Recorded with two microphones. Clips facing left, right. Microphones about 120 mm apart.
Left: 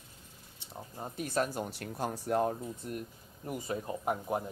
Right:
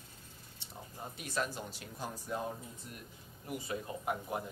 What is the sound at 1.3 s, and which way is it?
Speech, 50° left (ahead or behind).